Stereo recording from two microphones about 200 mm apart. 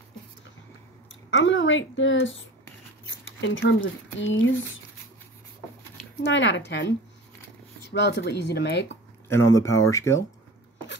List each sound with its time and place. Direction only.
1.3 s a woman's voice: 70° left (ahead or behind)
6.2 s speech: 65° left (ahead or behind)
7.9 s speech: 60° left (ahead or behind)
9.3 s speech: 15° left (ahead or behind)